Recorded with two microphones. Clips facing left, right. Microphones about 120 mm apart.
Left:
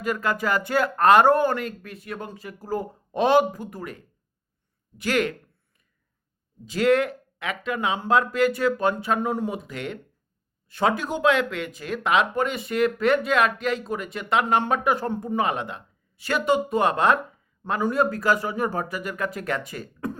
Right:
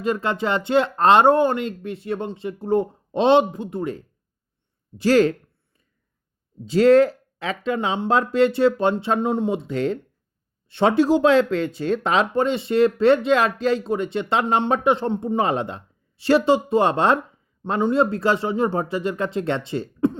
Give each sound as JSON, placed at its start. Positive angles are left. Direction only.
{"t": 0.0, "sound": "speech", "side_deg": -25}
{"t": 6.7, "sound": "speech", "side_deg": -30}